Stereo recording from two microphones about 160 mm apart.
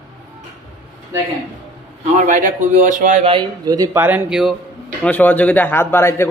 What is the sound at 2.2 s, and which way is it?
A man's voice, 55° right (ahead or behind).